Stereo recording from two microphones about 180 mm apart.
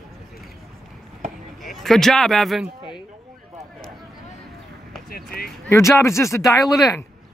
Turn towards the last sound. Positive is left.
turn(degrees=15)  # may be behind; listen again after turning